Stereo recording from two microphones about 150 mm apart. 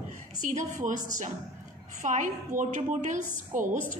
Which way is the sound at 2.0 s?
60° right (ahead or behind).